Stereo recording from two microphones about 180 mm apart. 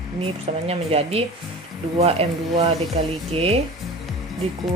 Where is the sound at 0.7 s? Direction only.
35° right (ahead or behind).